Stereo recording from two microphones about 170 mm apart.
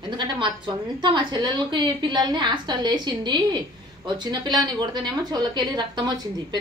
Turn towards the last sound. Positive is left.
turn(degrees=-25)  # may be behind; listen again after turning